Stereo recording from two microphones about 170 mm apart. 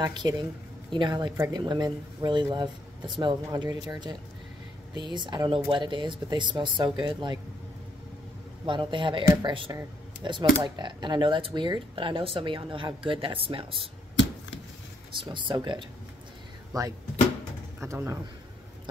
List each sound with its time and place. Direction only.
0.0 s speech: 25° right (ahead or behind)
8.6 s speech: 30° right (ahead or behind)
15.1 s speech: 30° right (ahead or behind)